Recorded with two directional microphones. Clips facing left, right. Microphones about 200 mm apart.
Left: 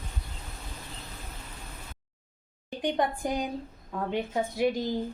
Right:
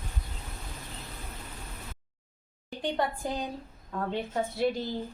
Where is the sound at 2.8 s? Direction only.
15° left (ahead or behind).